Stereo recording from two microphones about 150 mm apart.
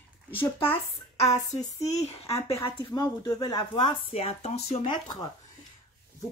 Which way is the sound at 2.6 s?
25° left (ahead or behind).